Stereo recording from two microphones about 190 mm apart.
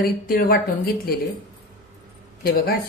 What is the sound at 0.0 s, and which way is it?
A woman's voice, 50° left (ahead or behind).